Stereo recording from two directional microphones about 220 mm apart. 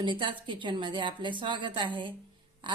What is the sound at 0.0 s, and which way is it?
A woman's voice, 20° right (ahead or behind).